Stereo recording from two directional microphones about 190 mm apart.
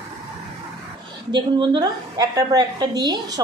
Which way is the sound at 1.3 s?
25° right (ahead or behind).